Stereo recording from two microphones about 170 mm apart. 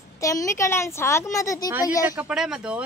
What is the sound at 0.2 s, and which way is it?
A woman's voice, 20° left (ahead or behind).